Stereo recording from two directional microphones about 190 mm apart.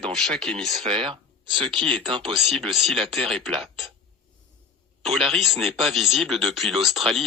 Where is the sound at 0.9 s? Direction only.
30° right (ahead or behind).